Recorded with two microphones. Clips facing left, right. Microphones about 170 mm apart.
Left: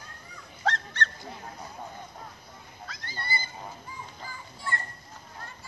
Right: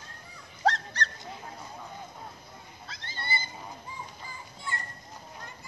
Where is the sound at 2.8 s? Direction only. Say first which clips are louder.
Left 1 dB; 25° right (ahead or behind).